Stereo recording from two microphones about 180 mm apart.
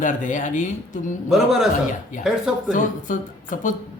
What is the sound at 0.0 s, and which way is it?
Speech, 45° left (ahead or behind).